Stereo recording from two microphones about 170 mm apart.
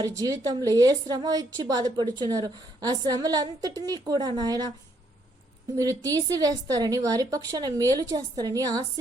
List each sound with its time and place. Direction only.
0.0 s a woman's voice: 20° right (ahead or behind)
5.7 s a woman's voice: 20° right (ahead or behind)